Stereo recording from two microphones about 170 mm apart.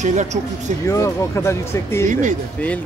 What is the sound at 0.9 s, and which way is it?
Speech, 20° left (ahead or behind).